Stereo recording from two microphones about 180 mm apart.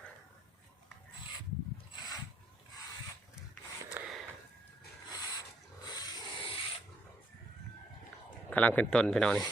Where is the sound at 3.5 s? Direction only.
Centre (ahead or behind).